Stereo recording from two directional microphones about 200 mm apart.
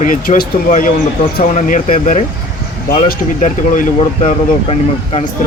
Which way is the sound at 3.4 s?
40° left (ahead or behind).